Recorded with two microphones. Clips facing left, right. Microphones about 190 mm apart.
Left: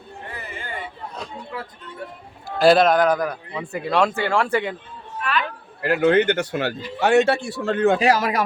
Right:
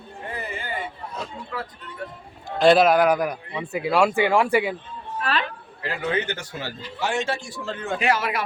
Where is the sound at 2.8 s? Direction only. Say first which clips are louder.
Even; 10° right (ahead or behind).